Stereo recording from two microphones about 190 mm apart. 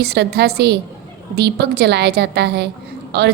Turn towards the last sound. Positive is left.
turn(degrees=-60)  # may be behind; listen again after turning